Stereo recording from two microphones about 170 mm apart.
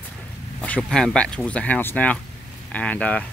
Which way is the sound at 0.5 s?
10° left (ahead or behind).